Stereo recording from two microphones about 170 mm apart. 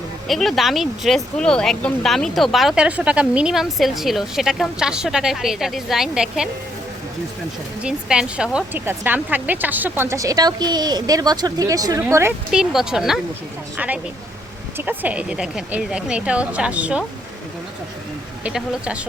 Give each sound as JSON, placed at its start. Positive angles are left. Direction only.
{"t": 0.3, "sound": "speech", "side_deg": 0}
{"t": 7.8, "sound": "speech", "side_deg": -5}
{"t": 12.5, "sound": "speech", "side_deg": -5}
{"t": 18.4, "sound": "speech", "side_deg": -5}